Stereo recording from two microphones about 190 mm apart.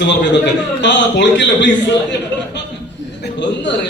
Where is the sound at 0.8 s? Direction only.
70° left (ahead or behind).